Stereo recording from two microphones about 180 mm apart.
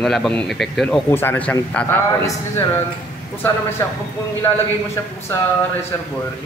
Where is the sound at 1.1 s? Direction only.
10° left (ahead or behind).